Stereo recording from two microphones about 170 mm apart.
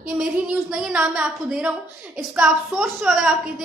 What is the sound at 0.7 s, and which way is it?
A woman's voice, 5° right (ahead or behind).